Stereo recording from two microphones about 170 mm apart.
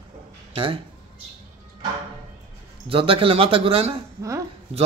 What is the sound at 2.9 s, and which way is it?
A man's voice, 30° right (ahead or behind).